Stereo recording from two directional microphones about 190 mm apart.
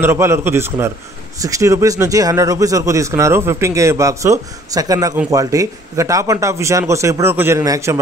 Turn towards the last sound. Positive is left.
turn(degrees=-15)  # may be behind; listen again after turning